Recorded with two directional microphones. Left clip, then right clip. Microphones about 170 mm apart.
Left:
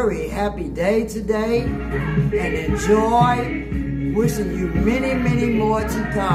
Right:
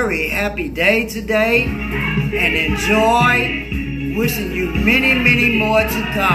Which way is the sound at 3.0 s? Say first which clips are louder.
Right 7 dB; 20° left (ahead or behind).